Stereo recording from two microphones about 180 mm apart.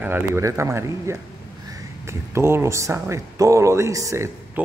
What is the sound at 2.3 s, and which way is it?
Speech, 15° right (ahead or behind).